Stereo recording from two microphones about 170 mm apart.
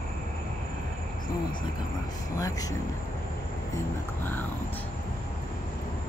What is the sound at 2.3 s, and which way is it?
Speech, 20° left (ahead or behind).